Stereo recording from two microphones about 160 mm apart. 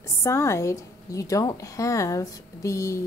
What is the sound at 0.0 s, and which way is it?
Speech, 20° left (ahead or behind).